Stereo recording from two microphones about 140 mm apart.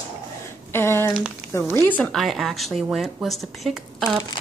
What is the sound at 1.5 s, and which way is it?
Speech, 20° left (ahead or behind).